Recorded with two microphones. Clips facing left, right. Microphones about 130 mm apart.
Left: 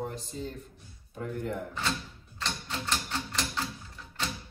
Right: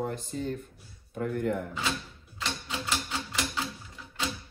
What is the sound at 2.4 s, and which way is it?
Typewriter, 10° right (ahead or behind).